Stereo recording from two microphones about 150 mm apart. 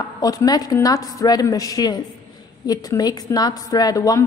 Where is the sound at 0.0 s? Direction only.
25° left (ahead or behind).